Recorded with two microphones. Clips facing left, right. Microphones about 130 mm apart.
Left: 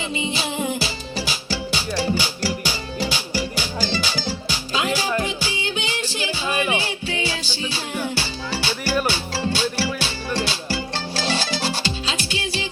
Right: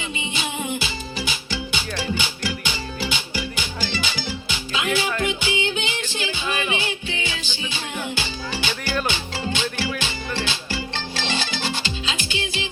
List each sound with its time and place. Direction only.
0.3 s music: 35° left (ahead or behind)